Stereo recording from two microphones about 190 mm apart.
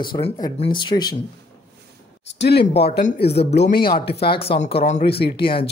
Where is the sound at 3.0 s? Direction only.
30° left (ahead or behind).